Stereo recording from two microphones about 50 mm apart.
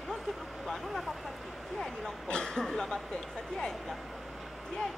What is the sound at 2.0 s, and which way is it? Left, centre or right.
Cough, centre.